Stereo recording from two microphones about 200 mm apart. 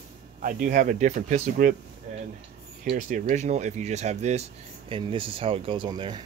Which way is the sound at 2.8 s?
40° right (ahead or behind).